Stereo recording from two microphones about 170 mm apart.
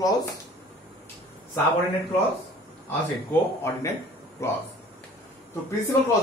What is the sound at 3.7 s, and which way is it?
Speech, 15° left (ahead or behind).